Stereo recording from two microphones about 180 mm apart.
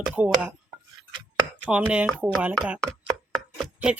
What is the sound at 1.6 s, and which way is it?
Speech, 5° right (ahead or behind).